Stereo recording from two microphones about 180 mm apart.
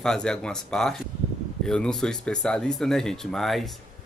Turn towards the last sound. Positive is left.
turn(degrees=0)  # may be behind; listen again after turning